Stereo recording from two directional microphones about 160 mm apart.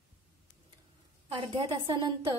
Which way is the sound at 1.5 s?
25° right (ahead or behind).